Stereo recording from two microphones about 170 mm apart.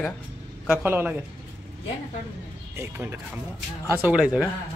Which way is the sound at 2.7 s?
15° right (ahead or behind).